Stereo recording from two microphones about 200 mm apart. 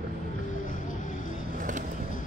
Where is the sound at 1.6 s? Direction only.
40° right (ahead or behind).